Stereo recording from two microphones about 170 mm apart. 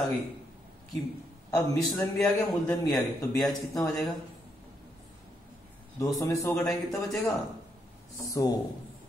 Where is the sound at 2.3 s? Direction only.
20° left (ahead or behind).